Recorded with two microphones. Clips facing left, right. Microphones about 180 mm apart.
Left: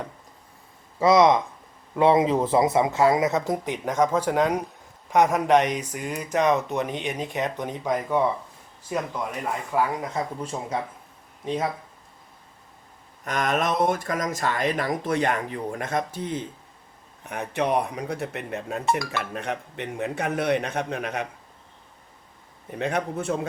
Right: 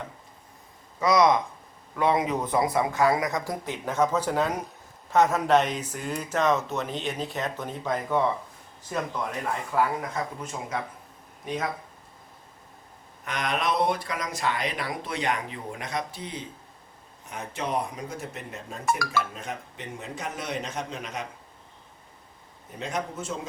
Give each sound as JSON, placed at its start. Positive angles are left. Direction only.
{"t": 0.9, "sound": "speech", "side_deg": 25}
{"t": 10.2, "sound": "speech", "side_deg": 30}
{"t": 13.2, "sound": "speech", "side_deg": 45}
{"t": 17.2, "sound": "a man's voice", "side_deg": 65}
{"t": 18.9, "sound": "speech", "side_deg": 25}
{"t": 19.3, "sound": "a man's voice", "side_deg": 65}
{"t": 22.8, "sound": "a man's voice", "side_deg": 60}